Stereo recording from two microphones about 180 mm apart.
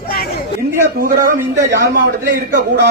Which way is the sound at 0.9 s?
55° right (ahead or behind).